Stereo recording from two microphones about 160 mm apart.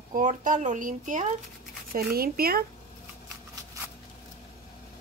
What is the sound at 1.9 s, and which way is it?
Speech, 70° right (ahead or behind).